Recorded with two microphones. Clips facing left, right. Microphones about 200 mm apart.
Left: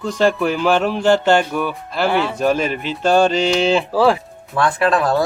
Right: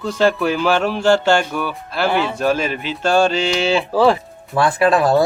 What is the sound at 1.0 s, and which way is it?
Mantra, 20° left (ahead or behind).